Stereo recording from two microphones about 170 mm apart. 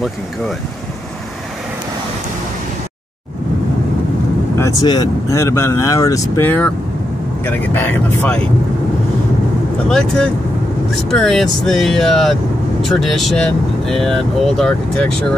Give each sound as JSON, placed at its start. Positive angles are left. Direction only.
{"t": 4.6, "sound": "speech", "side_deg": 20}
{"t": 9.8, "sound": "speech", "side_deg": 5}